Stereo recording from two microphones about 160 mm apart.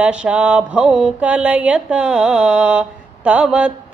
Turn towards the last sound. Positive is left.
turn(degrees=-5)  # may be behind; listen again after turning